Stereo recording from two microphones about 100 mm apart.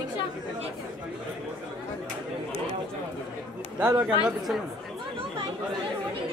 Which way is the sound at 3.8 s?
20° right (ahead or behind).